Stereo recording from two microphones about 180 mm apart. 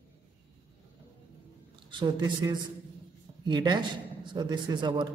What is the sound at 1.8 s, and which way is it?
A man's voice, 25° right (ahead or behind).